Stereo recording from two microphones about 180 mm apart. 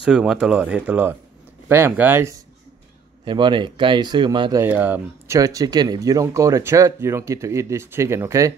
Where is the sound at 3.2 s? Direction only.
25° right (ahead or behind).